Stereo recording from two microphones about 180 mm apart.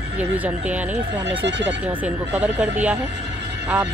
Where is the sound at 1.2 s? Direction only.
75° right (ahead or behind).